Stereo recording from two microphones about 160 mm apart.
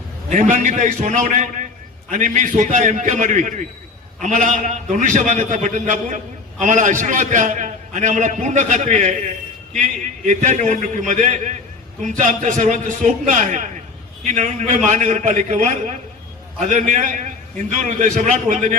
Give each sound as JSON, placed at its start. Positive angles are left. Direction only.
{"t": 0.3, "sound": "a man's voice", "side_deg": -50}